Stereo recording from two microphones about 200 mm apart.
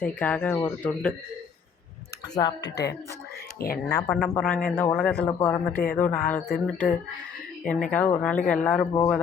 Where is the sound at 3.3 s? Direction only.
50° left (ahead or behind).